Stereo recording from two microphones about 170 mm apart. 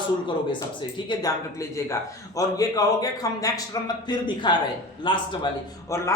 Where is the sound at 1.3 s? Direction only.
20° left (ahead or behind).